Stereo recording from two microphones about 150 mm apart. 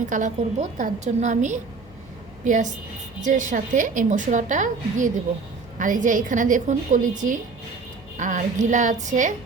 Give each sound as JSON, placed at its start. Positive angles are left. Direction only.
{"t": 0.1, "sound": "a woman's voice", "side_deg": -55}